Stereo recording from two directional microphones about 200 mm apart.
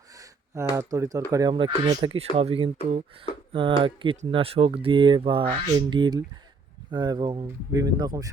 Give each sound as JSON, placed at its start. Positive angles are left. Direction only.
{"t": 0.2, "sound": "speech", "side_deg": -15}